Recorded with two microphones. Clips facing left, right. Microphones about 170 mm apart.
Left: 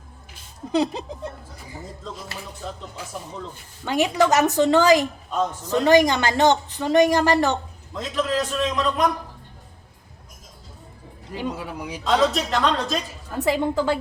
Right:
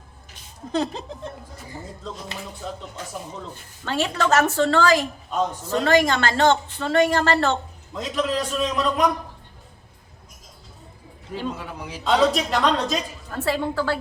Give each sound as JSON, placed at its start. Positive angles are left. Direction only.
{"t": 0.7, "sound": "speech", "side_deg": 10}
{"t": 2.6, "sound": "a woman's voice", "side_deg": 0}
{"t": 3.8, "sound": "speech", "side_deg": 15}
{"t": 7.9, "sound": "a man's voice", "side_deg": -5}
{"t": 11.3, "sound": "speech", "side_deg": 10}
{"t": 12.0, "sound": "a woman's voice", "side_deg": -5}
{"t": 13.3, "sound": "speech", "side_deg": 15}